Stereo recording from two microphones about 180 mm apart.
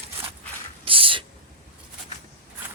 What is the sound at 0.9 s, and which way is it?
Owl, 30° right (ahead or behind).